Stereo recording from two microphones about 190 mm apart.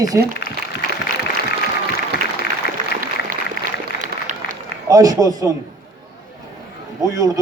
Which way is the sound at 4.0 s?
45° right (ahead or behind).